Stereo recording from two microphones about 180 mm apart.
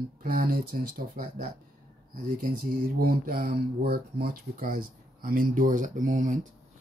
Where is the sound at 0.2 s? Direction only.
50° right (ahead or behind).